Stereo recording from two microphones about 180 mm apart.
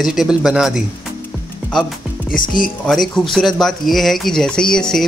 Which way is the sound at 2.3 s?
50° left (ahead or behind).